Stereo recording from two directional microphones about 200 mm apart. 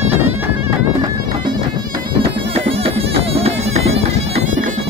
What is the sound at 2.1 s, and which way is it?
Music, 30° right (ahead or behind).